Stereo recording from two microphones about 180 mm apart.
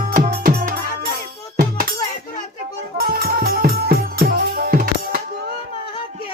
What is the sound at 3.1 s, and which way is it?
Music, 55° right (ahead or behind).